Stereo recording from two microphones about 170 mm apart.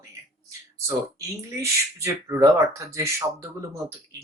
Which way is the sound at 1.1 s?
15° right (ahead or behind).